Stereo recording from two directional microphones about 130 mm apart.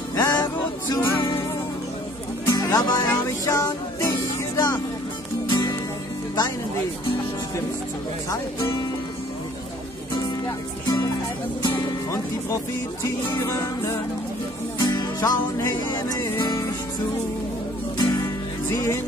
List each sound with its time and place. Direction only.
0.2 s music: 30° left (ahead or behind)
2.4 s music: 25° left (ahead or behind)
10.1 s music: 35° left (ahead or behind)
17.9 s music: 30° left (ahead or behind)